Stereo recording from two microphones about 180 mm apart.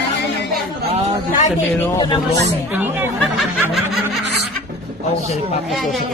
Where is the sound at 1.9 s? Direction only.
25° left (ahead or behind).